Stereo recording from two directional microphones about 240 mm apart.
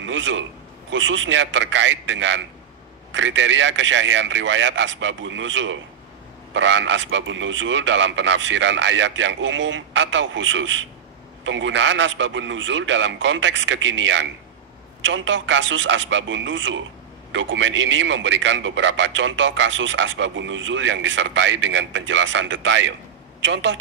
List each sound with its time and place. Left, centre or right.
0.0 s a man's voice: right